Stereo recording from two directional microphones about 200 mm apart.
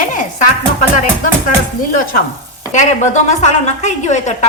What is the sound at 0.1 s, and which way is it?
Music, 40° left (ahead or behind).